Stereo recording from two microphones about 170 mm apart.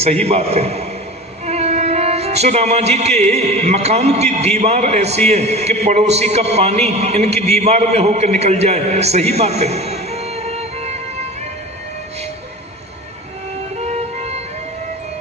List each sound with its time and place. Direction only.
0.3 s a man's voice: 35° right (ahead or behind)
13.7 s music: 40° right (ahead or behind)